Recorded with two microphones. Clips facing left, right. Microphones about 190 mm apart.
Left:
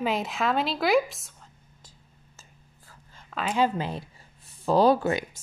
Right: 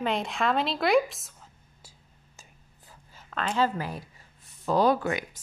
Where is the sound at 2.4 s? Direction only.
15° right (ahead or behind).